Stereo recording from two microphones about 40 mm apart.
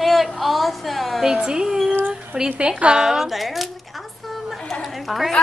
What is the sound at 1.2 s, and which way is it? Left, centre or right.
A woman's voice, centre.